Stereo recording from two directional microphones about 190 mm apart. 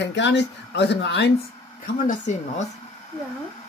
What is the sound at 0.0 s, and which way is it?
Speech, 65° left (ahead or behind).